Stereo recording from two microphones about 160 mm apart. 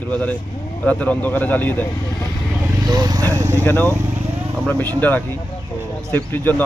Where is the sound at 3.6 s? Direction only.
10° left (ahead or behind).